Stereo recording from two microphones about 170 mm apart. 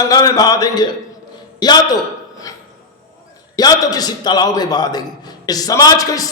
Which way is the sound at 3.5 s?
20° left (ahead or behind).